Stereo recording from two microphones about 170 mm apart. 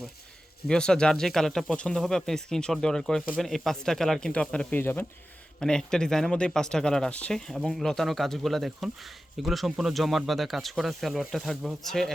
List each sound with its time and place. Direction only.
0.7 s speech: 5° left (ahead or behind)